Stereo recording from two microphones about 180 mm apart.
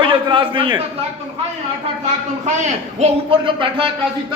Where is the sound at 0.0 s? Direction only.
30° right (ahead or behind).